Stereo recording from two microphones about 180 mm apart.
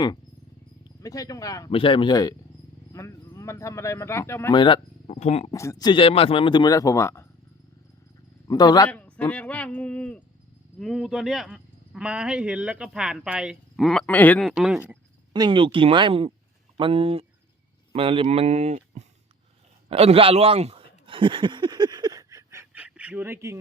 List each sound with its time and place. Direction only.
0.9 s speech: 20° left (ahead or behind)
1.7 s speech: 30° left (ahead or behind)
4.5 s speech: 30° left (ahead or behind)
5.5 s speech: 15° left (ahead or behind)
8.4 s speech: 20° left (ahead or behind)
8.9 s speech: 5° left (ahead or behind)
15.3 s speech: 25° right (ahead or behind)